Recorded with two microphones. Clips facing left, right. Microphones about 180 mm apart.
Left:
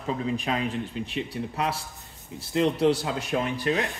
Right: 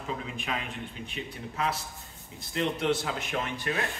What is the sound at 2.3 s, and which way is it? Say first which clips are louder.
Speech: left 7 dB; 35° left (ahead or behind).